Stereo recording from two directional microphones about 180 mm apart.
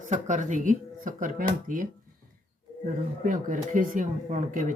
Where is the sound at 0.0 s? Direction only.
45° right (ahead or behind).